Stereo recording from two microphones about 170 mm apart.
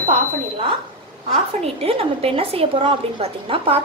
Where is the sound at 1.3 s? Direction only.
35° right (ahead or behind).